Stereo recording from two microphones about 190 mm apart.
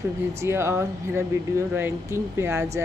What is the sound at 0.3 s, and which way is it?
Speech, 15° right (ahead or behind).